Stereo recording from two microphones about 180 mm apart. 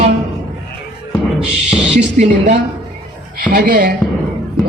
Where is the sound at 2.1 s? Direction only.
40° right (ahead or behind).